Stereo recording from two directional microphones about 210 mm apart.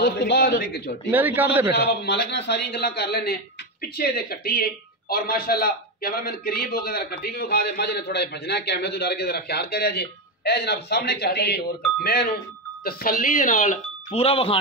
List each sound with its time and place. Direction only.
0.0 s a man's voice: 50° left (ahead or behind)
1.1 s a man's voice: 10° right (ahead or behind)
2.0 s a man's voice: 50° left (ahead or behind); by 14.6 s 25° left (ahead or behind)